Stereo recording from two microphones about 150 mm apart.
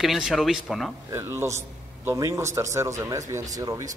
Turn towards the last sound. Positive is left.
turn(degrees=-20)  # may be behind; listen again after turning